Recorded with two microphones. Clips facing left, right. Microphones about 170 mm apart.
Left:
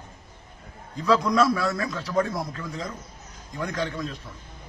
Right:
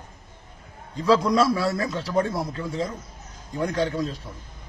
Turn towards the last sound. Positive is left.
turn(degrees=-35)  # may be behind; listen again after turning